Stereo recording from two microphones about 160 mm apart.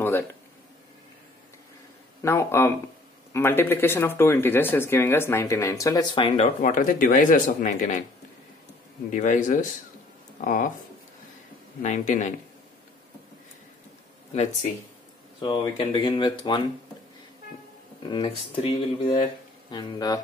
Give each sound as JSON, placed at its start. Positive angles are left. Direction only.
{"t": 0.0, "sound": "a sound", "side_deg": 15}
{"t": 2.2, "sound": "speech", "side_deg": 15}
{"t": 6.2, "sound": "speech", "side_deg": 40}
{"t": 6.6, "sound": "speech", "side_deg": 55}
{"t": 9.1, "sound": "speech", "side_deg": 50}
{"t": 11.8, "sound": "speech", "side_deg": 50}
{"t": 14.3, "sound": "speech", "side_deg": 45}
{"t": 15.4, "sound": "speech", "side_deg": 35}
{"t": 18.0, "sound": "speech", "side_deg": 30}